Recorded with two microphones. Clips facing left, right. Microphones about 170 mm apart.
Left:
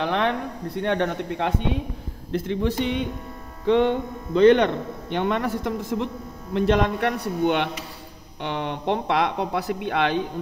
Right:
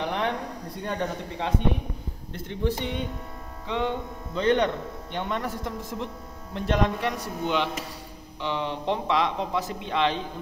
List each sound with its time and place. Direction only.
0.0 s a sound: 90° left
0.7 s speech: 75° left (ahead or behind)
2.3 s speech: 90° left
3.6 s speech: 60° left (ahead or behind)